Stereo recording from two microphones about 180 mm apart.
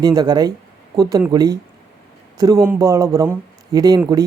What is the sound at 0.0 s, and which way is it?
Speech, 20° right (ahead or behind).